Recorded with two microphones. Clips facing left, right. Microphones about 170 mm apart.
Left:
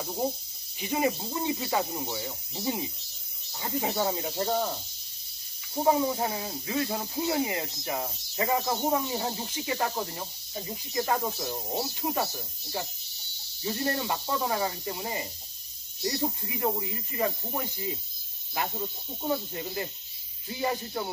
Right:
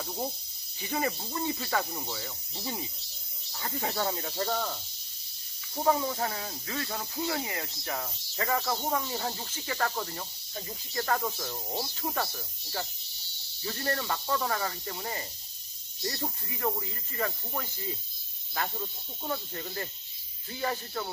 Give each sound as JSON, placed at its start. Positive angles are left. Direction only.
{"t": 0.7, "sound": "speech", "side_deg": 20}
{"t": 5.8, "sound": "speech", "side_deg": 15}
{"t": 13.7, "sound": "speech", "side_deg": 20}